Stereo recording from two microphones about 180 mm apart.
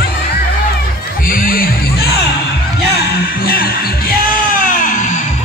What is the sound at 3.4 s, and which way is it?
Music, 55° left (ahead or behind).